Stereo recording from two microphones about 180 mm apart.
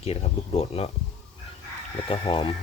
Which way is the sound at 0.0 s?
35° left (ahead or behind).